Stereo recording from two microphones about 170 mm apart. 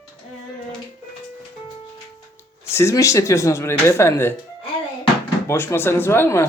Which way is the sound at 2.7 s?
15° left (ahead or behind).